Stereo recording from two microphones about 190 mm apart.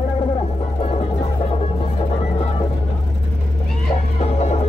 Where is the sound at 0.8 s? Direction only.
30° left (ahead or behind).